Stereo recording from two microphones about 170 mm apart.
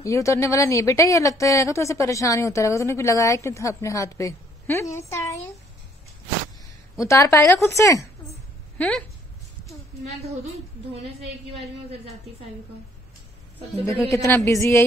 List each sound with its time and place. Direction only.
0.0 s a woman's voice: 15° left (ahead or behind)
7.0 s a woman's voice: 15° left (ahead or behind)
10.0 s speech: 40° right (ahead or behind)
13.8 s a woman's voice: 15° left (ahead or behind)